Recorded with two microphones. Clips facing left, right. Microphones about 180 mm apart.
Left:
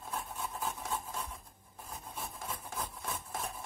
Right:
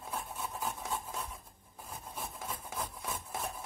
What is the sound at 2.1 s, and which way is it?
Rub, 10° right (ahead or behind).